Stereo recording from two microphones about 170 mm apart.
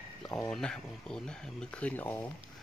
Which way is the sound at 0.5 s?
5° left (ahead or behind).